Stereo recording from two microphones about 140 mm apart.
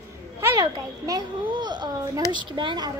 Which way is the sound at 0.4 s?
20° right (ahead or behind).